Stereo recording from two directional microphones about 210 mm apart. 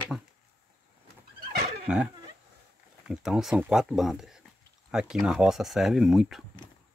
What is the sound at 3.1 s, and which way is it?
Speech, centre (ahead or behind).